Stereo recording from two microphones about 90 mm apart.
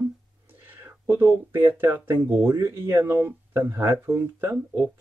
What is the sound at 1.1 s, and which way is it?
Speech, 25° right (ahead or behind).